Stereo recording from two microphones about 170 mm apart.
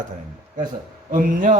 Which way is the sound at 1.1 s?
50° right (ahead or behind).